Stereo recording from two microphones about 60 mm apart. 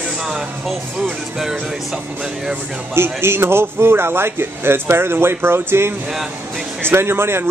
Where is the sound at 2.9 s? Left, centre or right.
Right.